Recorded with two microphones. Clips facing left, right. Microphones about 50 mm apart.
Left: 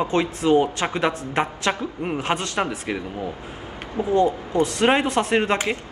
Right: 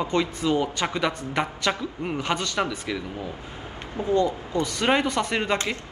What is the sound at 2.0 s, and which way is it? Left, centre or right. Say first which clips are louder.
Speech: left 2 dB; left.